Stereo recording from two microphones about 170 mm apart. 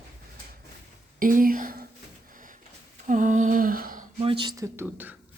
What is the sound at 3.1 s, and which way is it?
Speech, 50° right (ahead or behind).